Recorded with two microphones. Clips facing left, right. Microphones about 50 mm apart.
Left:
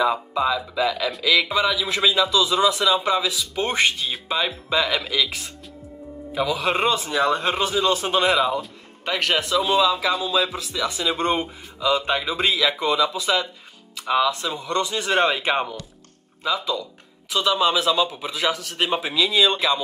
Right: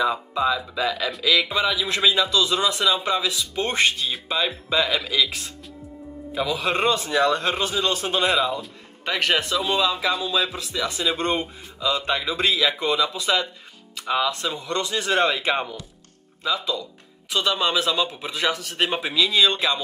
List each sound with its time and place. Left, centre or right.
0.0 s a man's voice: centre
7.5 s a man's voice: centre
8.4 s a man's voice: centre
10.9 s a man's voice: centre
12.5 s a man's voice: centre
14.4 s a man's voice: centre
17.3 s a man's voice: centre